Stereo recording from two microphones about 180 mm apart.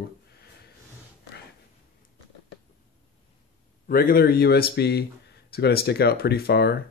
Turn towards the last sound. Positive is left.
turn(degrees=65)  # may be behind; listen again after turning